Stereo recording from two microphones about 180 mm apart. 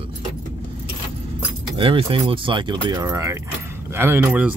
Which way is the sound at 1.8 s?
30° right (ahead or behind).